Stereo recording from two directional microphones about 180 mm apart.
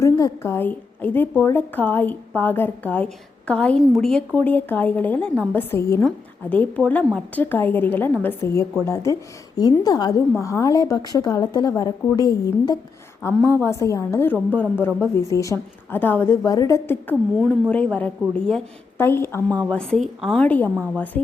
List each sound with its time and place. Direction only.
0.0 s a woman's voice: 15° left (ahead or behind)
19.7 s a woman's voice: centre (ahead or behind)